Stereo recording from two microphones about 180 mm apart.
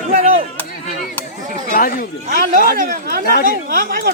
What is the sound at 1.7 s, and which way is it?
Chatter, 50° left (ahead or behind).